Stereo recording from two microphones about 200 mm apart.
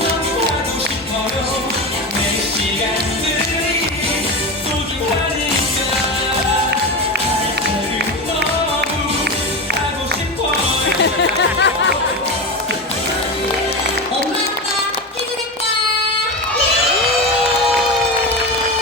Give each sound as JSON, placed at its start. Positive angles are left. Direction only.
{"t": 11.0, "sound": "music", "side_deg": 60}